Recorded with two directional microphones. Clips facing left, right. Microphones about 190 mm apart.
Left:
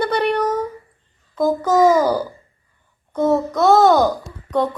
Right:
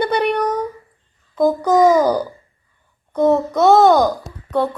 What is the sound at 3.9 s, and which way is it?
Speech, 15° right (ahead or behind).